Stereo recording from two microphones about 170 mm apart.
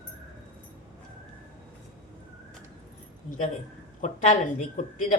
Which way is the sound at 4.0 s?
45° left (ahead or behind).